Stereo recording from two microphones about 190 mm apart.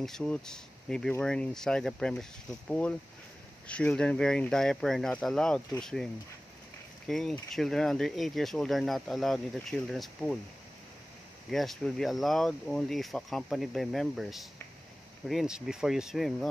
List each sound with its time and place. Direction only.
0.0 s speech: 5° left (ahead or behind)
7.1 s speech: centre (ahead or behind)
11.5 s speech: centre (ahead or behind)